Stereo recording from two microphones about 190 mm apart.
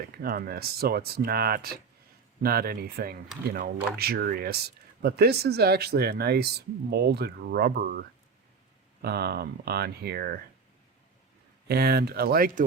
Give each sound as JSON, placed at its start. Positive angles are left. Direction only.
{"t": 0.2, "sound": "speech", "side_deg": -50}
{"t": 11.7, "sound": "speech", "side_deg": -55}